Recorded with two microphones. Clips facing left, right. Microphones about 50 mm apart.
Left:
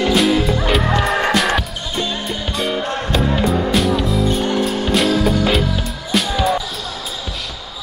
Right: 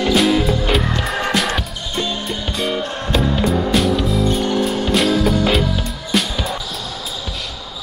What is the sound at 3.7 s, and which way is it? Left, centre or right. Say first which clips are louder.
Music: even; centre.